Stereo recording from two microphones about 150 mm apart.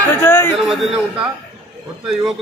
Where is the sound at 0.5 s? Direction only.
Centre (ahead or behind).